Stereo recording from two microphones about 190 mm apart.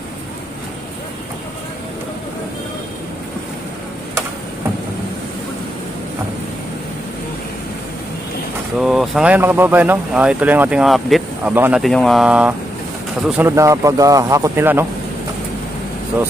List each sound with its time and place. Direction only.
8.7 s speech: centre (ahead or behind)
11.5 s speech: 10° right (ahead or behind)
11.8 s speech: centre (ahead or behind)
13.4 s speech: 15° right (ahead or behind)